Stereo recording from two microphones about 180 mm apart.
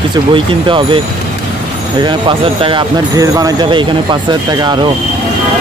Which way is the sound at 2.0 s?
30° right (ahead or behind).